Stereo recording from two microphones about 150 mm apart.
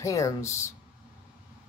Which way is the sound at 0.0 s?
20° left (ahead or behind).